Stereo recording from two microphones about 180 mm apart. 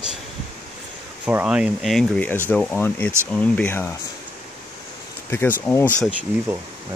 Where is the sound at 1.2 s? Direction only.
5° right (ahead or behind); by 3.9 s 10° left (ahead or behind).